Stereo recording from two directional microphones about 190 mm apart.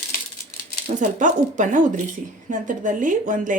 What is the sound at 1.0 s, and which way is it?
Speech, 40° right (ahead or behind).